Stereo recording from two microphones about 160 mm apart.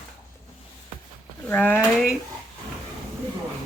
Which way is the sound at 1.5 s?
10° left (ahead or behind).